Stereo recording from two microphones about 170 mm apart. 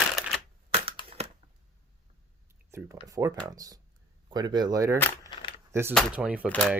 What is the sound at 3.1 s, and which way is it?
Speech, 20° right (ahead or behind).